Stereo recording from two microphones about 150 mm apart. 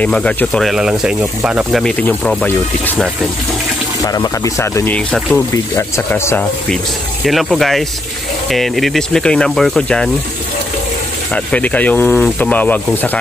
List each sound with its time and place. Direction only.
0.0 s speech: 10° left (ahead or behind); by 1.8 s 10° right (ahead or behind)
1.8 s speech: 5° left (ahead or behind)
4.0 s speech: 25° left (ahead or behind)
4.9 s speech: 10° left (ahead or behind)
5.5 s speech: 20° left (ahead or behind)
7.2 s speech: centre (ahead or behind)
11.3 s speech: 10° left (ahead or behind)